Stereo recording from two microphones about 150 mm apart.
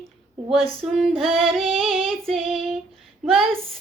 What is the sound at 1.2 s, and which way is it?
Child singing, centre (ahead or behind).